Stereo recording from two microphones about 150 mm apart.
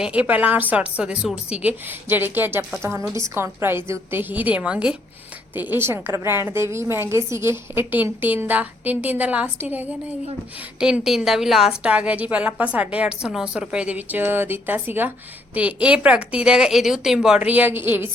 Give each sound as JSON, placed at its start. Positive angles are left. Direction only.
{"t": 0.0, "sound": "a woman's voice", "side_deg": -10}